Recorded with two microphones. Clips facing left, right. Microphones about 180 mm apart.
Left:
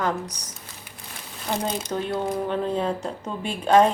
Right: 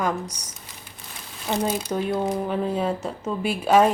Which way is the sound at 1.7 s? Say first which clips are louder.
Right 2 dB; 10° right (ahead or behind).